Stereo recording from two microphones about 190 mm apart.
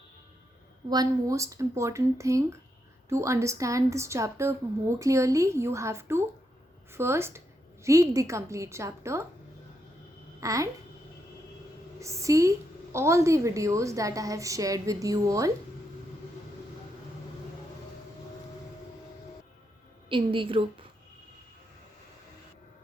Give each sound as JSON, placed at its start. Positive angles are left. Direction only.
{"t": 0.9, "sound": "a woman's voice", "side_deg": -20}
{"t": 10.4, "sound": "a woman's voice", "side_deg": -15}
{"t": 11.9, "sound": "a woman's voice", "side_deg": -15}
{"t": 20.1, "sound": "a woman's voice", "side_deg": -25}